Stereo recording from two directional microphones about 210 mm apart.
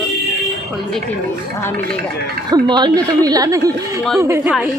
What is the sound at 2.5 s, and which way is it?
Speech, 20° right (ahead or behind).